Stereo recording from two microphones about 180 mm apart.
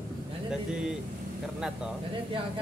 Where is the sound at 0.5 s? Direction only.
5° right (ahead or behind).